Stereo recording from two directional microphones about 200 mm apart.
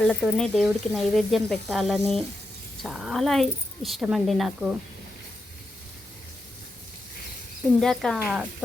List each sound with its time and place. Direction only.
0.0 s speech: centre (ahead or behind)
7.8 s speech: centre (ahead or behind)